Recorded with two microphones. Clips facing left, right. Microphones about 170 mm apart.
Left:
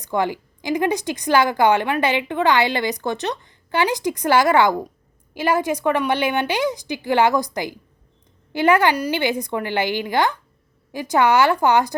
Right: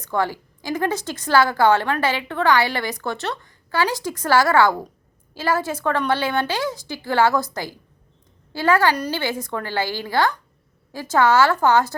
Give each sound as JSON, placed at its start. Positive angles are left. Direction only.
{"t": 0.0, "sound": "a woman's voice", "side_deg": 15}